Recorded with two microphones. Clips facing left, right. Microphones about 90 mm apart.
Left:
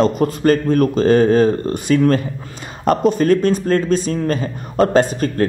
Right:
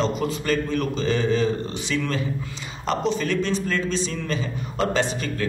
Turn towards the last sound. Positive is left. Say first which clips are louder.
# left 9 dB
turn(degrees=45)  # may be behind; listen again after turning